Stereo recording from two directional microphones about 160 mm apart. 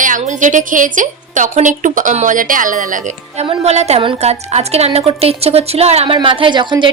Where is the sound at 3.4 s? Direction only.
40° right (ahead or behind).